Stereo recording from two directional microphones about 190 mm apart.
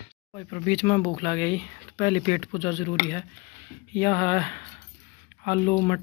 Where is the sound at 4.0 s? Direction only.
15° left (ahead or behind).